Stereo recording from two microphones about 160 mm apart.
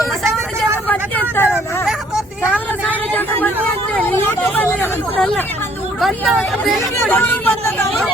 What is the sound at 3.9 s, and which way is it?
Hubbub, 10° left (ahead or behind).